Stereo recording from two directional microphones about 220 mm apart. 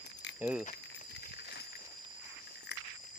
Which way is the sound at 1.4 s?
50° left (ahead or behind).